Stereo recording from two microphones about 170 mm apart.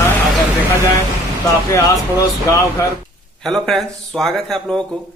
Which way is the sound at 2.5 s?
20° left (ahead or behind).